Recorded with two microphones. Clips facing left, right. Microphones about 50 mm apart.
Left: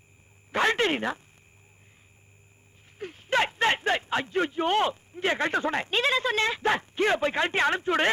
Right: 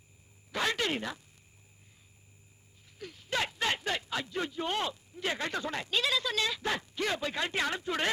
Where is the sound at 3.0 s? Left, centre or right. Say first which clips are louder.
Left 8 dB; left.